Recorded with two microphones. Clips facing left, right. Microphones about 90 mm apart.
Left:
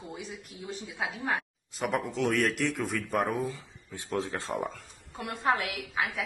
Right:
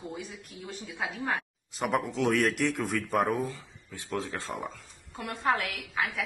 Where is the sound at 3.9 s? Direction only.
20° left (ahead or behind).